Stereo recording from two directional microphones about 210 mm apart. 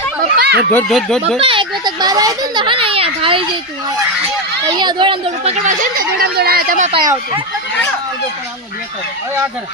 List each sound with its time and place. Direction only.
0.3 s a sound: 50° right (ahead or behind)
0.7 s speech: 5° left (ahead or behind)
1.4 s a child's voice: 25° right (ahead or behind)
4.6 s speech: 20° right (ahead or behind)